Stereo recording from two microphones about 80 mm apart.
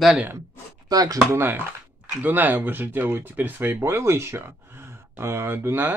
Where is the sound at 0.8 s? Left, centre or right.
Right.